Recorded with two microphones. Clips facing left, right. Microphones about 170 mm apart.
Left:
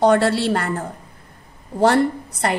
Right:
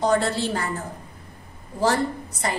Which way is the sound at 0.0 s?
70° left (ahead or behind).